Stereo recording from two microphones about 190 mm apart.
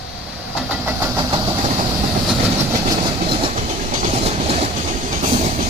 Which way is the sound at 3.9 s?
35° right (ahead or behind).